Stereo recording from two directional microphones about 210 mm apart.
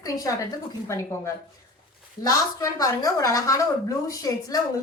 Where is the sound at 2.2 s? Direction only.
15° left (ahead or behind).